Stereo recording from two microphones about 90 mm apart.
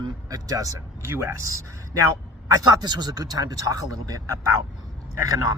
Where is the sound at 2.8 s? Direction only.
50° right (ahead or behind).